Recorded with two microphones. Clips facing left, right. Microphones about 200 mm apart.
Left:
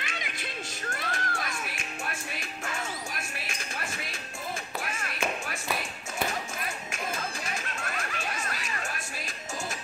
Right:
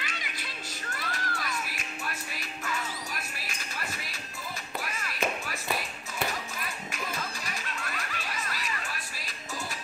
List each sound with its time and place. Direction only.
0.0 s music: 50° left (ahead or behind)
4.8 s clapping: 50° left (ahead or behind)
7.4 s music: 50° left (ahead or behind)